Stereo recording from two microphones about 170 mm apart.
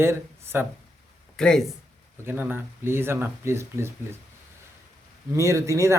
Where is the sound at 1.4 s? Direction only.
5° left (ahead or behind).